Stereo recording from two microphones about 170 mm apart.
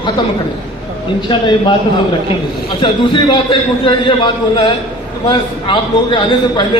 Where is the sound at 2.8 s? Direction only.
30° left (ahead or behind).